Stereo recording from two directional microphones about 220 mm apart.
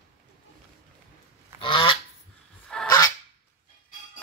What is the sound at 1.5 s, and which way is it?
Goose, 25° left (ahead or behind).